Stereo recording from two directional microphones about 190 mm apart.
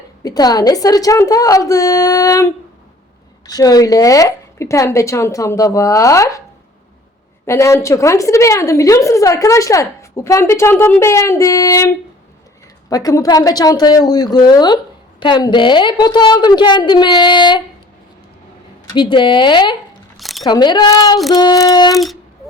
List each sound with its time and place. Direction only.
0.2 s a woman's voice: 20° left (ahead or behind)
7.4 s a woman's voice: 15° left (ahead or behind)
18.9 s a woman's voice: 25° left (ahead or behind)
20.1 s a sound: centre (ahead or behind)
20.4 s a woman's voice: 25° left (ahead or behind)
21.9 s music: centre (ahead or behind)